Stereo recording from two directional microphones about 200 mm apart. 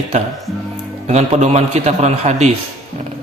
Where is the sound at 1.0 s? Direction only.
35° right (ahead or behind).